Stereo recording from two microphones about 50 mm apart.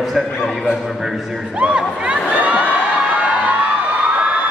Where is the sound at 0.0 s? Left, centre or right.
Centre.